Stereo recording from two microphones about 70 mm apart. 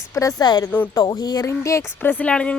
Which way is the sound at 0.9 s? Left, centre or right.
Left.